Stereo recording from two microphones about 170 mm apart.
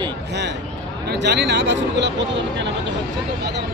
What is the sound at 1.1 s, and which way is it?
Speech, 80° right.